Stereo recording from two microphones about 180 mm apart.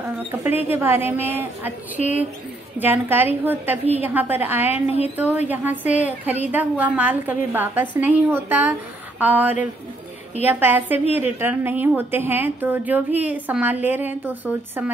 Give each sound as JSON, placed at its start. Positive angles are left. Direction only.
{"t": 0.6, "sound": "a woman's voice", "side_deg": -10}
{"t": 2.0, "sound": "a woman's voice", "side_deg": 45}
{"t": 2.8, "sound": "a woman's voice", "side_deg": -10}